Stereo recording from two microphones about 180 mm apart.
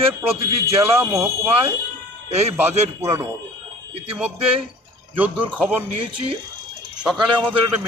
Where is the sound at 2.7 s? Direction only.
40° right (ahead or behind).